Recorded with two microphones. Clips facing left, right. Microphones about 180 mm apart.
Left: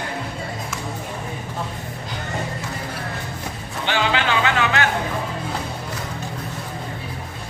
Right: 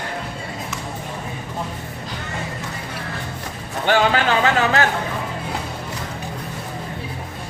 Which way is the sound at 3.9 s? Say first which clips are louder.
Right 4 dB; 45° right (ahead or behind).